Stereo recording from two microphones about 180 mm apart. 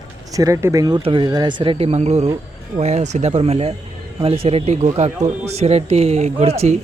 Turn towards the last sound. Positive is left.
turn(degrees=-35)  # may be behind; listen again after turning